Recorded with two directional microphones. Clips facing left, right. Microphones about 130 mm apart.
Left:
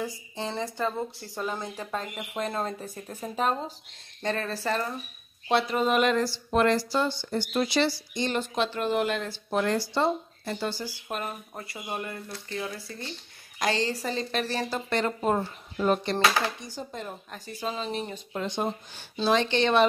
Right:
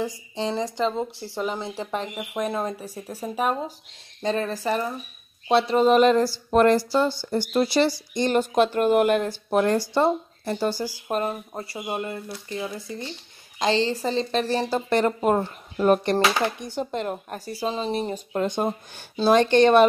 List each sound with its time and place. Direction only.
0.0 s speech: 20° right (ahead or behind)
5.5 s a sound: 25° right (ahead or behind)
6.5 s speech: 45° right (ahead or behind)
7.2 s a sound: 40° right (ahead or behind)
8.1 s a woman's voice: 45° right (ahead or behind); by 14.8 s 30° right (ahead or behind)
14.9 s speech: 45° right (ahead or behind)
15.1 s speech: 55° right (ahead or behind)
16.2 s a woman's voice: 20° right (ahead or behind)
16.5 s speech: 65° right (ahead or behind)
17.5 s speech: 35° right (ahead or behind)